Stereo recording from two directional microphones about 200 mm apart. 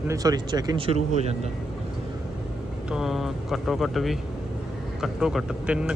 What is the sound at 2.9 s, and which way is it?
Speech, centre (ahead or behind).